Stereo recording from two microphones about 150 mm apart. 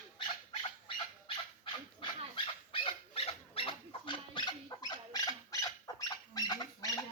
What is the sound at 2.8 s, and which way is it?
Dog, 40° left (ahead or behind).